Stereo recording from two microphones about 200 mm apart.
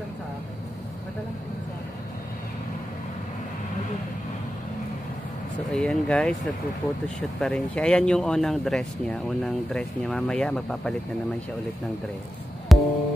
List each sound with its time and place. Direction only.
5.7 s speech: 5° left (ahead or behind)
12.7 s music: centre (ahead or behind)